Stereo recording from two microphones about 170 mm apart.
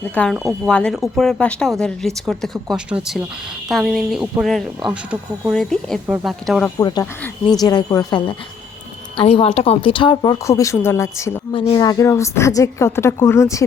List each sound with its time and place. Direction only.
0.1 s a woman's voice: 10° left (ahead or behind)
0.3 s speech: 10° right (ahead or behind)
0.7 s speech: 5° left (ahead or behind)
6.7 s a woman's voice: 25° left (ahead or behind)
9.1 s a woman's voice: 35° left (ahead or behind)
10.4 s a woman's voice: 15° left (ahead or behind)
11.5 s a woman's voice: 30° left (ahead or behind)